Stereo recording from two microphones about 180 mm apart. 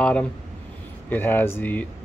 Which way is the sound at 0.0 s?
5° left (ahead or behind).